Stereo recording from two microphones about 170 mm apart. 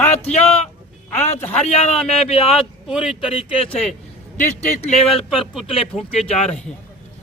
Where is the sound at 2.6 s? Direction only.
Centre (ahead or behind).